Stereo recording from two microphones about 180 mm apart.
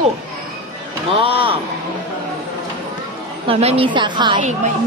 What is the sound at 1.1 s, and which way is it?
Speech, 30° right (ahead or behind).